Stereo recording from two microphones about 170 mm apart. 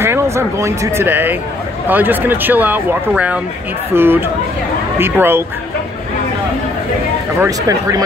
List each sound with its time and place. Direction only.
0.0 s speech: 15° right (ahead or behind)
7.4 s speech: 20° right (ahead or behind)